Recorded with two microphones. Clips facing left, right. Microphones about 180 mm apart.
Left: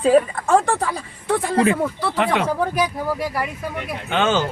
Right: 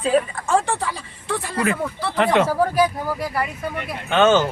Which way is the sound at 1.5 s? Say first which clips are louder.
Left 5 dB; 25° left (ahead or behind).